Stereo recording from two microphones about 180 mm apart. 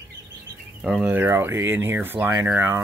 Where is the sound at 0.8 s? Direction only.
5° right (ahead or behind).